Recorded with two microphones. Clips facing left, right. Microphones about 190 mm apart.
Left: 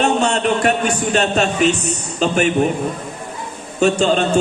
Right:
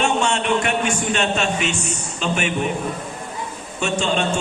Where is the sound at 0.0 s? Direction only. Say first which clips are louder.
Left 4 dB; 40° left (ahead or behind).